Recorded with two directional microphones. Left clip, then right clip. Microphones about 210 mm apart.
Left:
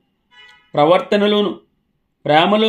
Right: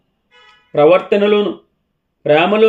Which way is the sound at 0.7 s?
25° left (ahead or behind).